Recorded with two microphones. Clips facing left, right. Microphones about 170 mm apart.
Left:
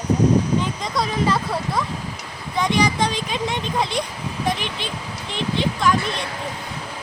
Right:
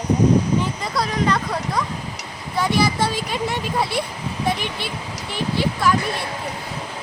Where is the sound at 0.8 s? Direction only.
Centre (ahead or behind).